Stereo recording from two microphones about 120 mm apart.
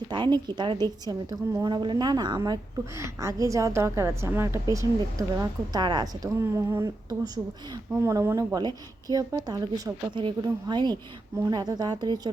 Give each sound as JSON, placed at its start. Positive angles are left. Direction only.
{"t": 0.1, "sound": "a woman's voice", "side_deg": -40}
{"t": 6.4, "sound": "speech", "side_deg": -20}
{"t": 8.0, "sound": "speech", "side_deg": -20}
{"t": 8.5, "sound": "a woman's voice", "side_deg": -35}